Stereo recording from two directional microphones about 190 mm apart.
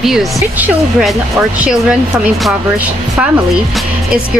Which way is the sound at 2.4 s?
5° right (ahead or behind).